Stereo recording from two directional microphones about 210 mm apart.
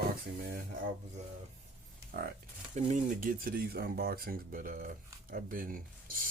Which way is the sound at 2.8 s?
35° right (ahead or behind).